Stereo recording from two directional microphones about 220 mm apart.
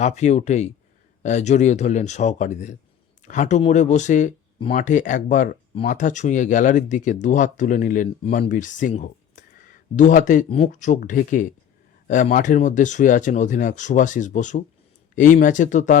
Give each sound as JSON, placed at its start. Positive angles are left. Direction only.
{"t": 0.0, "sound": "speech", "side_deg": 30}
{"t": 8.9, "sound": "a sound", "side_deg": 35}
{"t": 9.9, "sound": "speech", "side_deg": 35}